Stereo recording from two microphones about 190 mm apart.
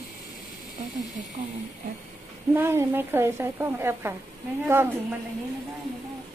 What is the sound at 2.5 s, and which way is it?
Speech, 10° right (ahead or behind).